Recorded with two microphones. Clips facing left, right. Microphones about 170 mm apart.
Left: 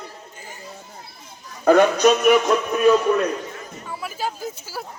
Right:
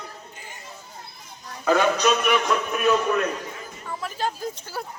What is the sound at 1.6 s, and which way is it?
Speech, 45° left (ahead or behind).